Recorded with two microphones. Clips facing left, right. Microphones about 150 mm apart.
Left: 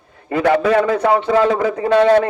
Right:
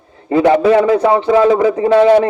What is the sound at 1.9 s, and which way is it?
Speech, 10° right (ahead or behind).